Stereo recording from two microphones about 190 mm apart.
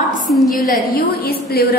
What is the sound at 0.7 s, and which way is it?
A woman's voice, 50° left (ahead or behind).